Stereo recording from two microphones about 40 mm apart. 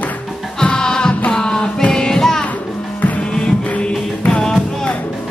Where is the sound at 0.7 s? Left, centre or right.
Centre.